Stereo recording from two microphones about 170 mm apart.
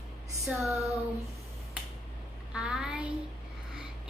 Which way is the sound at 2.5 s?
5° right (ahead or behind).